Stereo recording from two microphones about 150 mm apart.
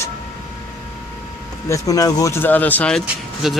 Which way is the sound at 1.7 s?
25° left (ahead or behind).